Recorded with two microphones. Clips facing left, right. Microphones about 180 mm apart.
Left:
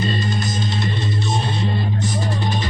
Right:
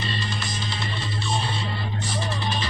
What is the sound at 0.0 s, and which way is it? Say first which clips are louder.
Music: left 8 dB; 45° left (ahead or behind).